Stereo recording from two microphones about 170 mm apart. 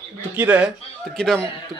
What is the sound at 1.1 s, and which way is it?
Speech, centre (ahead or behind).